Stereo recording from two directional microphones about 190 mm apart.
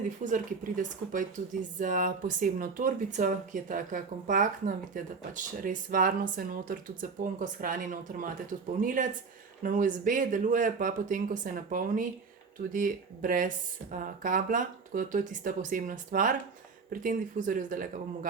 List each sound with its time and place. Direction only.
0.3 s speech: 40° right (ahead or behind)